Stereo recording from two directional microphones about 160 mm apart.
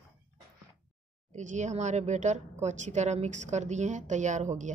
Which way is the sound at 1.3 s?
50° right (ahead or behind).